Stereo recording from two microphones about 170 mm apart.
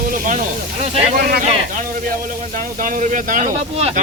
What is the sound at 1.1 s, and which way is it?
Speech, 65° right (ahead or behind).